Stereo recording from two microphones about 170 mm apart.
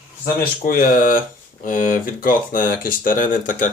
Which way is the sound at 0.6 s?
55° left (ahead or behind).